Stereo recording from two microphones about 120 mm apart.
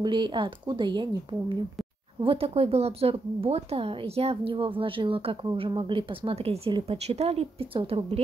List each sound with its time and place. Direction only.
0.0 s speech: 40° right (ahead or behind)
2.2 s a woman's voice: 55° right (ahead or behind)